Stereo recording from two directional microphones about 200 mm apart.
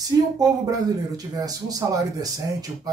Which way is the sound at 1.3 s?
20° right (ahead or behind).